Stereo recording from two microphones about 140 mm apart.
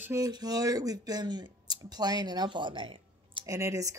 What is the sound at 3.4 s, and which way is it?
Speech, 20° right (ahead or behind).